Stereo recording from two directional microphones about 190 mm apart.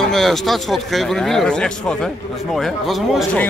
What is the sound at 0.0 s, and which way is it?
A man's voice, centre (ahead or behind).